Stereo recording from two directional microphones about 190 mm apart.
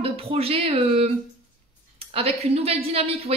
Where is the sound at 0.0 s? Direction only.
30° right (ahead or behind).